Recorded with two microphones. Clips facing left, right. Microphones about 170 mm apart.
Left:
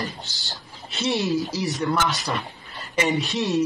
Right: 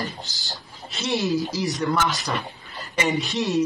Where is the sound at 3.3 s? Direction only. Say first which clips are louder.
Right 1 dB; centre (ahead or behind).